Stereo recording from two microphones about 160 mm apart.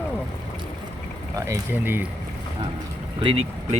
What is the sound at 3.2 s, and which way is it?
Speech, 35° right (ahead or behind).